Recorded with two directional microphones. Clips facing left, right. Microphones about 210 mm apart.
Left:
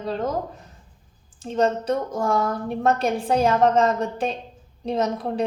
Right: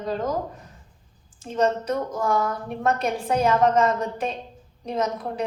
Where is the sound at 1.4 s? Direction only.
30° left (ahead or behind).